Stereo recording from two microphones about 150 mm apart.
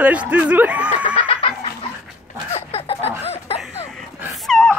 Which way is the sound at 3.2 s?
45° left (ahead or behind).